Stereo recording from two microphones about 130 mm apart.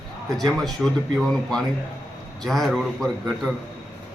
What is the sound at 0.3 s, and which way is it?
A man's voice, centre (ahead or behind).